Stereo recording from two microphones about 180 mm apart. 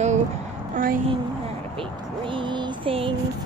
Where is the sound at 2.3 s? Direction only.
25° right (ahead or behind).